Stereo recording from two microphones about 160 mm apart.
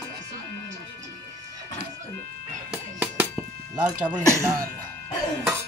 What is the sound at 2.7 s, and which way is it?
Music, 10° right (ahead or behind).